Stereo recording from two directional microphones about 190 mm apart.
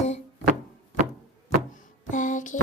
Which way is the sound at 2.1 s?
40° left (ahead or behind).